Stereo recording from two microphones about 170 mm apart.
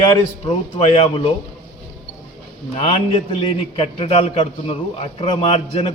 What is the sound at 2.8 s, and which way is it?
A man's voice, 35° left (ahead or behind).